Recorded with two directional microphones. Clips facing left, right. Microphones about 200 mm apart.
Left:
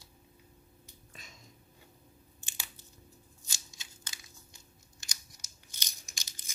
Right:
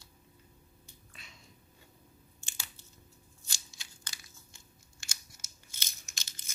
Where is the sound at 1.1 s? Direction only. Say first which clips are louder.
Left 3 dB; 40° left (ahead or behind).